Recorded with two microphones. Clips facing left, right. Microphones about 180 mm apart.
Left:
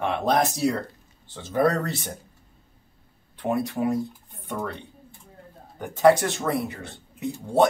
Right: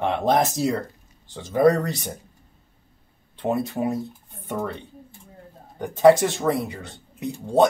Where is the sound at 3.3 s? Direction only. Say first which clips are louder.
Right 1 dB; 20° right (ahead or behind).